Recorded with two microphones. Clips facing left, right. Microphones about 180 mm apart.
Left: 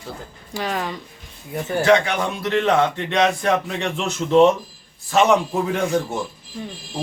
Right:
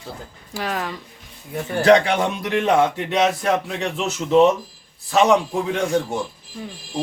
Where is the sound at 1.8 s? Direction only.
35° right (ahead or behind).